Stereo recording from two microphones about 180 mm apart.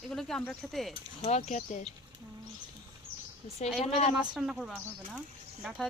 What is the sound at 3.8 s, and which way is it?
Speech, 35° left (ahead or behind).